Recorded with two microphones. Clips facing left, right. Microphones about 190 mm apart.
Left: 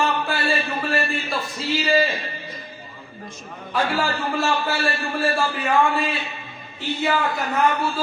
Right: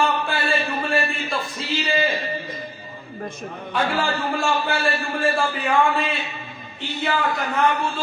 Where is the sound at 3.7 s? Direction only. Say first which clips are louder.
Even; centre (ahead or behind).